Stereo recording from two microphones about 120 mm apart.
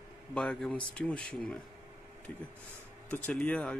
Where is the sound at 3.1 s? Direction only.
10° left (ahead or behind).